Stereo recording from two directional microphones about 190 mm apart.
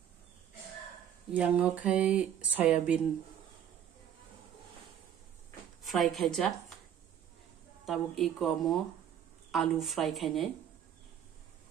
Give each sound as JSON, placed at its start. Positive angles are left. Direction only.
{"t": 1.3, "sound": "speech", "side_deg": -10}
{"t": 5.8, "sound": "a woman's voice", "side_deg": 0}
{"t": 7.8, "sound": "speech", "side_deg": 0}